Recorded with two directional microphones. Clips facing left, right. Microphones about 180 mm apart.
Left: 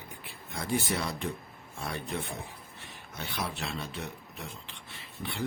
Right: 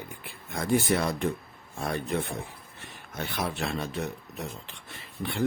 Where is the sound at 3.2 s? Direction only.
50° right (ahead or behind).